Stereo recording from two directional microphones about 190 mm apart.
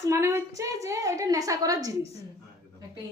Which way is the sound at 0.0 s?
15° right (ahead or behind).